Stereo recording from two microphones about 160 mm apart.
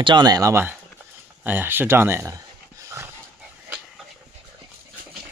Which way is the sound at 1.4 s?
10° right (ahead or behind).